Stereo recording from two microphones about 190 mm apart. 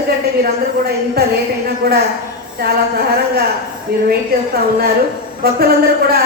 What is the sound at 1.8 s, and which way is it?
Speech, 55° right (ahead or behind).